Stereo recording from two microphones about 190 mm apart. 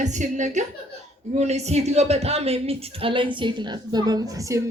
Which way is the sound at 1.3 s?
35° right (ahead or behind).